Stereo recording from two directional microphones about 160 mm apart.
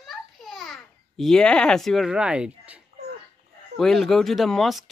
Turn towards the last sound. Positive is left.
turn(degrees=0)  # may be behind; listen again after turning